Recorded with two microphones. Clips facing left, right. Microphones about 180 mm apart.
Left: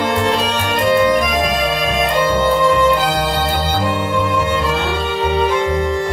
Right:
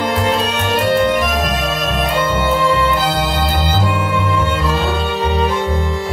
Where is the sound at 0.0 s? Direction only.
Centre (ahead or behind).